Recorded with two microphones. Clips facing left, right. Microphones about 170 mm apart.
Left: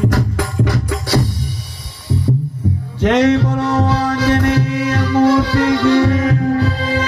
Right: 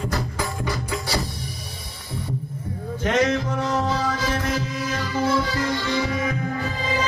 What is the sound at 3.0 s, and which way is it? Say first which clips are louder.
Music: left 9 dB; 75° left (ahead or behind).